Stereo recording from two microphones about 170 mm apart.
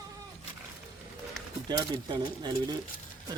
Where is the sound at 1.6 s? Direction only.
25° right (ahead or behind).